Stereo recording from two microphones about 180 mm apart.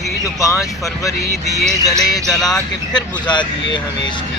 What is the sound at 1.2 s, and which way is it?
Speech, 65° left (ahead or behind).